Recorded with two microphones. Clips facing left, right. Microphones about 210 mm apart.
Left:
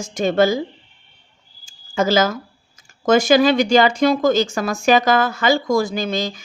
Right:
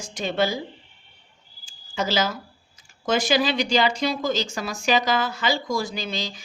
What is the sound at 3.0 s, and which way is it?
Speech, 45° left (ahead or behind).